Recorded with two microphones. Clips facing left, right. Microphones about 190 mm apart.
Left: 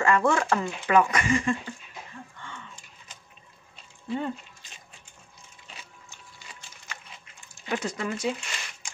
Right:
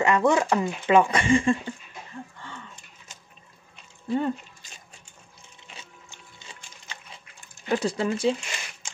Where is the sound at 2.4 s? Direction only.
35° right (ahead or behind).